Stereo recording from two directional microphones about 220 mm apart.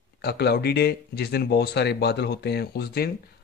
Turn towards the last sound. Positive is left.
turn(degrees=45)  # may be behind; listen again after turning